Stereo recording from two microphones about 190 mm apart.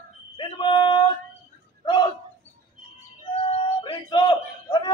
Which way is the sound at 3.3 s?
30° left (ahead or behind).